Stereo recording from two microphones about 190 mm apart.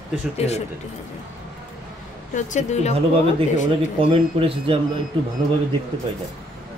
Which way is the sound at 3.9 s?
30° right (ahead or behind).